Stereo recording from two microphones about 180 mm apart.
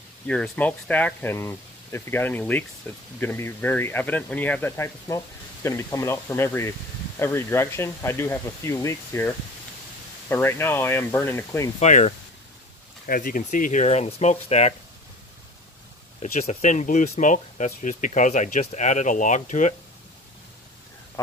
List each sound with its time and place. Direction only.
0.3 s speech: 5° left (ahead or behind)
10.3 s speech: 10° left (ahead or behind)
11.8 s speech: 40° left (ahead or behind)
16.2 s speech: 40° left (ahead or behind)